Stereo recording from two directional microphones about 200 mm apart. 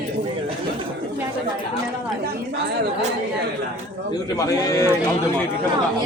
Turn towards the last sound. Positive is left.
turn(degrees=15)  # may be behind; listen again after turning